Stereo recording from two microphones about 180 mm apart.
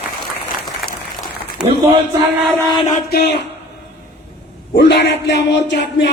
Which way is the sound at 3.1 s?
65° left (ahead or behind).